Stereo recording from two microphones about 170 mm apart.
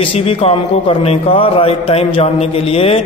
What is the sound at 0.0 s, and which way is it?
A man's voice, 30° left (ahead or behind).